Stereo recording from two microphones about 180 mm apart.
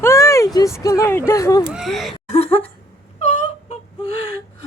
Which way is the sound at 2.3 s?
35° left (ahead or behind).